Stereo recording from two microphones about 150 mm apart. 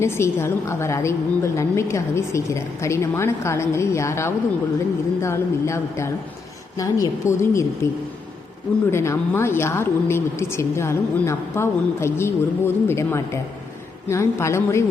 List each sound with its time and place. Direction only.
0.0 s a woman's voice: 15° left (ahead or behind)